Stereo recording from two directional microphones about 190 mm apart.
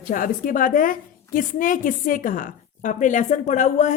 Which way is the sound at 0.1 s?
45° left (ahead or behind).